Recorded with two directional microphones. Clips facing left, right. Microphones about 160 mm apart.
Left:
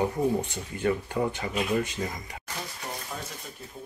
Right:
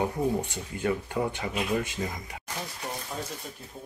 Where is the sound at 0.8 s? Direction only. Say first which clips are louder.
Left 2 dB; 10° right (ahead or behind).